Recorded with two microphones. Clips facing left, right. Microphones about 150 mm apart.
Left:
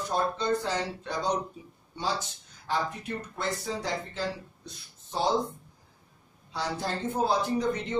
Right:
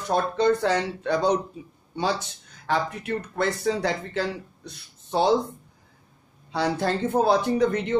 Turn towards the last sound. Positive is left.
turn(degrees=-65)  # may be behind; listen again after turning